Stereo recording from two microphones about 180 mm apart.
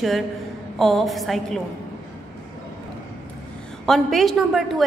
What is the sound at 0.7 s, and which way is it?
Speech, centre (ahead or behind).